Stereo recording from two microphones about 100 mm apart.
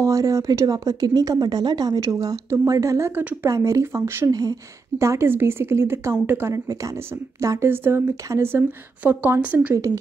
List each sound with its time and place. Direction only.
0.0 s speech: 35° right (ahead or behind)
4.3 s speech: 40° right (ahead or behind)
4.9 s speech: 30° right (ahead or behind)
6.5 s speech: 35° right (ahead or behind); by 9.8 s 15° right (ahead or behind)